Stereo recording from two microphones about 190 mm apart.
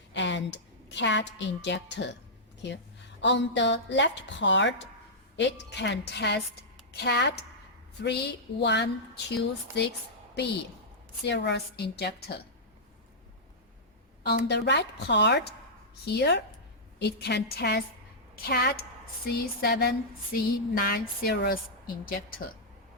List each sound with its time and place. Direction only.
0.1 s a woman's voice: 70° left (ahead or behind)
11.3 s speech: 65° left (ahead or behind)
14.3 s speech: 60° left (ahead or behind)